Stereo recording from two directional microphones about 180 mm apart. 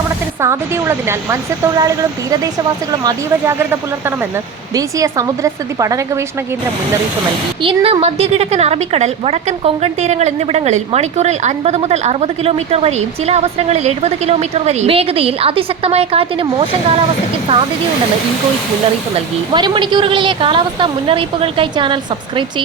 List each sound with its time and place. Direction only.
0.4 s a woman's voice: 15° right (ahead or behind)
7.6 s a woman's voice: 30° right (ahead or behind)
19.5 s a woman's voice: 25° right (ahead or behind)